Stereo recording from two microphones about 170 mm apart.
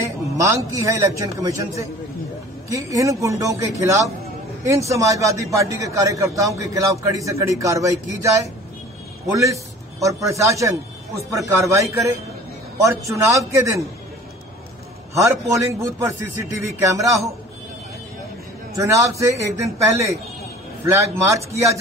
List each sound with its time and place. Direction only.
0.0 s a man's voice: 20° right (ahead or behind)
15.1 s a man's voice: 20° right (ahead or behind)
18.9 s a man's voice: 15° right (ahead or behind)